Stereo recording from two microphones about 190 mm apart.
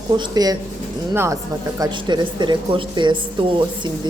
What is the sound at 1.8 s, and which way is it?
A woman's voice, 25° right (ahead or behind).